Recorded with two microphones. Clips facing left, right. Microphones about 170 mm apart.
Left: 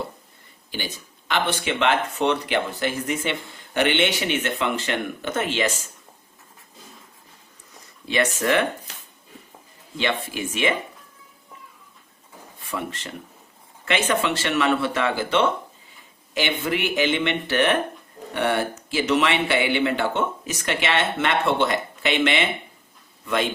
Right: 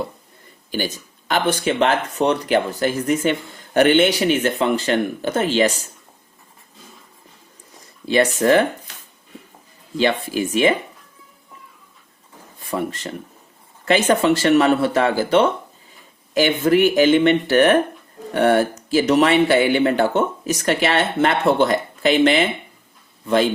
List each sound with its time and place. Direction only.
1.3 s speech: 40° right (ahead or behind)
8.0 s speech: 35° right (ahead or behind)
10.0 s speech: 35° right (ahead or behind)
12.7 s a man's voice: 40° right (ahead or behind)